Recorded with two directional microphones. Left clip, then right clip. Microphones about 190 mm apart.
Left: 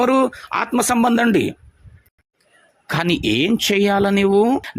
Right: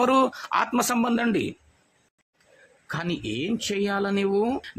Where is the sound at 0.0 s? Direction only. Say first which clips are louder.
Left 4 dB; 15° left (ahead or behind).